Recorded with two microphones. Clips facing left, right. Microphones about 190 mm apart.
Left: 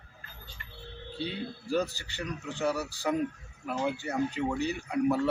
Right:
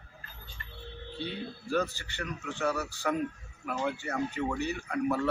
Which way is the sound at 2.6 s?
15° left (ahead or behind).